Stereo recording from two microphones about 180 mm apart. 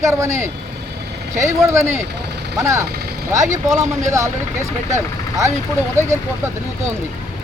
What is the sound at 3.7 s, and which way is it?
Speech, 40° right (ahead or behind).